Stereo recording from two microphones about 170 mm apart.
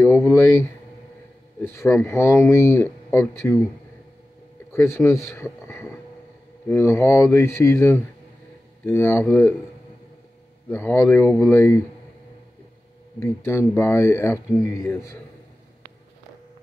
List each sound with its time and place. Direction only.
0.0 s speech: 15° left (ahead or behind)
4.7 s speech: 15° left (ahead or behind)
10.7 s speech: 15° left (ahead or behind)
13.2 s speech: 15° left (ahead or behind)